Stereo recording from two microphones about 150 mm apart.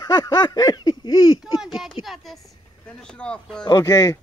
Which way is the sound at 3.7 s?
25° left (ahead or behind).